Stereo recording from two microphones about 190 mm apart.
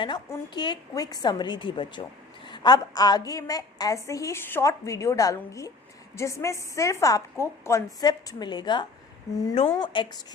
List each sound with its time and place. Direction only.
0.0 s a woman's voice: 25° left (ahead or behind)